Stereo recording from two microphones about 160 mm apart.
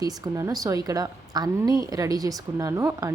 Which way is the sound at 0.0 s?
20° right (ahead or behind).